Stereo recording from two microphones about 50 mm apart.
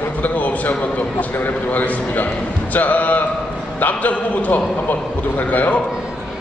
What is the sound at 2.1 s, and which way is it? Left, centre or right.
Speech, left.